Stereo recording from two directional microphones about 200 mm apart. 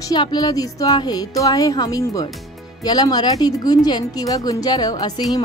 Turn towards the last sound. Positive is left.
turn(degrees=20)  # may be behind; listen again after turning